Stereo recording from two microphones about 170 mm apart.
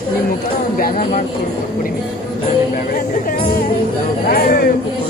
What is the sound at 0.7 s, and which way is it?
Speech, 55° left (ahead or behind).